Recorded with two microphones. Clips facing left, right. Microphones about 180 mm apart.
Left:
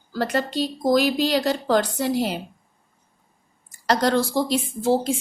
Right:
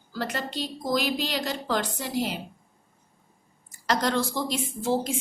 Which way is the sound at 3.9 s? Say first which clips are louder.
Left 5 dB; 35° left (ahead or behind).